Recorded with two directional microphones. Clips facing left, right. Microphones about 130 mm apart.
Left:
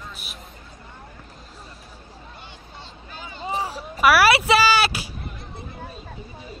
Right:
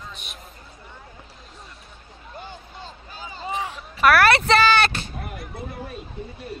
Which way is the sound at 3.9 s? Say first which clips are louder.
Even; 5° left (ahead or behind).